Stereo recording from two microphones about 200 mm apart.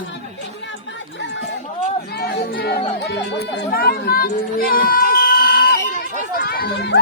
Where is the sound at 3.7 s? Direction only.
50° left (ahead or behind).